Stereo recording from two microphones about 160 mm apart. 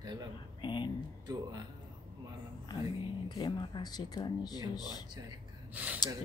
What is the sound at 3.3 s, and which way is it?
Speech, 25° left (ahead or behind).